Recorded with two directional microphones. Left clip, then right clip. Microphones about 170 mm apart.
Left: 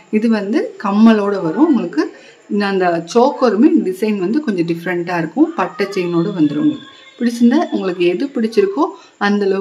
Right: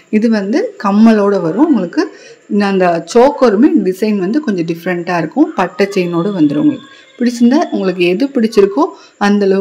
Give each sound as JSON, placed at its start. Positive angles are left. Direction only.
{"t": 0.1, "sound": "speech", "side_deg": -15}